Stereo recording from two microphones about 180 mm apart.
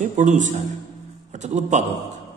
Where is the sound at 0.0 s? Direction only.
40° right (ahead or behind).